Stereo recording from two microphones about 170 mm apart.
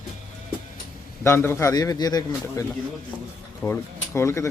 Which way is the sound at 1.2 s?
15° left (ahead or behind).